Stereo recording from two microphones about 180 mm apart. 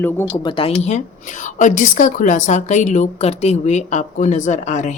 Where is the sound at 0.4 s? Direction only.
30° left (ahead or behind).